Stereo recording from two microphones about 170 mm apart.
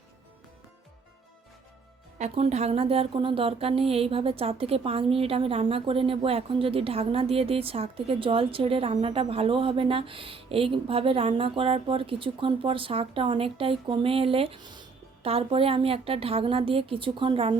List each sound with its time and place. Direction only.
2.1 s a woman's voice: 40° right (ahead or behind)